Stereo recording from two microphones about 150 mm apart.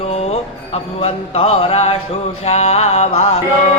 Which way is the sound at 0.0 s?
45° left (ahead or behind).